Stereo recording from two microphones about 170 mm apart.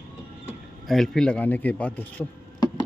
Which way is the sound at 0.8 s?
Centre (ahead or behind).